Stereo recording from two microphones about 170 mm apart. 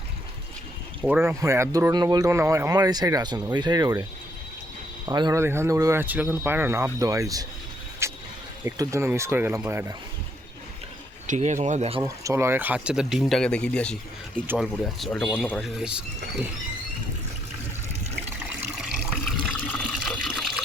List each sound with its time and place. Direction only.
1.0 s speech: 10° right (ahead or behind)
5.0 s speech: 25° right (ahead or behind)
8.0 s vehicle: 15° right (ahead or behind)
8.6 s speech: 15° right (ahead or behind)
11.3 s speech: 45° right (ahead or behind)
12.0 s speech: 15° right (ahead or behind); by 13.9 s 5° left (ahead or behind)
14.3 s speech: 10° right (ahead or behind)
14.9 s speech: 5° left (ahead or behind)
18.8 s water: centre (ahead or behind)